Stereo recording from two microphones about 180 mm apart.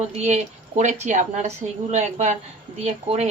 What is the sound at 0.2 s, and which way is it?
A woman's voice, 40° right (ahead or behind).